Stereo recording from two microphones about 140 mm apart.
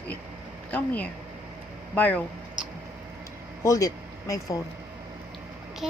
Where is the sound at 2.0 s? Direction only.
10° left (ahead or behind).